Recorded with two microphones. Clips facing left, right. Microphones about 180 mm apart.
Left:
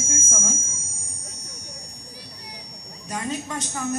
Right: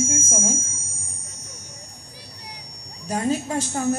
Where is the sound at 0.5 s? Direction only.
Centre (ahead or behind).